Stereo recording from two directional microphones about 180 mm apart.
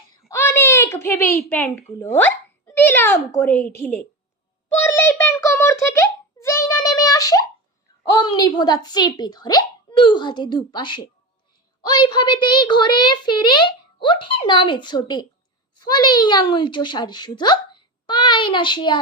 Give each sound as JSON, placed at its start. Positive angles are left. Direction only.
{"t": 0.3, "sound": "a woman's voice", "side_deg": 15}
{"t": 4.8, "sound": "a sound", "side_deg": 10}
{"t": 8.0, "sound": "a woman's voice", "side_deg": 20}